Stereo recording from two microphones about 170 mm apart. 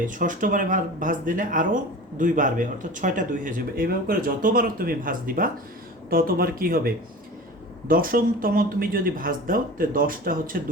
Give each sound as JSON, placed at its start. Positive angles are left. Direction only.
{"t": 0.0, "sound": "speech", "side_deg": -50}